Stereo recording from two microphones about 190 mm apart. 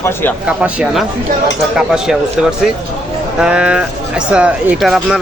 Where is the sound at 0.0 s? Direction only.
10° left (ahead or behind).